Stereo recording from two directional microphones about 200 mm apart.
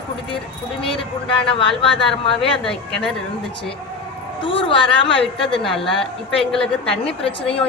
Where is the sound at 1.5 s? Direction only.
25° left (ahead or behind).